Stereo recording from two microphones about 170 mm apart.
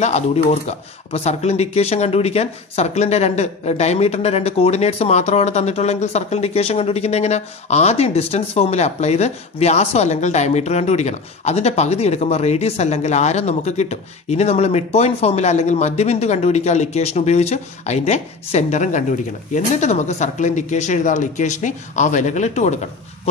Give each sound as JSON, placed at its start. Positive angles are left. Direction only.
{"t": 0.0, "sound": "speech", "side_deg": 40}